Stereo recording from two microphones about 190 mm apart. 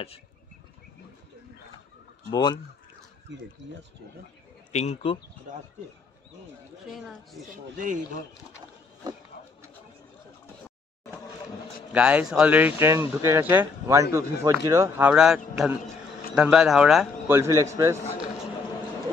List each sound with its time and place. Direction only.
2.3 s speech: 20° left (ahead or behind)
3.3 s speech: 70° right (ahead or behind)
4.7 s speech: 35° left (ahead or behind)
6.9 s speech: centre (ahead or behind)
7.7 s speech: 45° right (ahead or behind)
11.9 s speech: 5° right (ahead or behind)
17.3 s speech: 15° right (ahead or behind)